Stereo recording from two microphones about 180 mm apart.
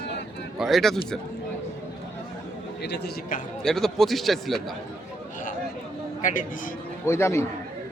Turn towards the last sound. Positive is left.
turn(degrees=15)  # may be behind; listen again after turning